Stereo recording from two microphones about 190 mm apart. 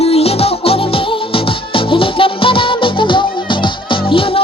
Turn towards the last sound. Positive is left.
turn(degrees=30)  # may be behind; listen again after turning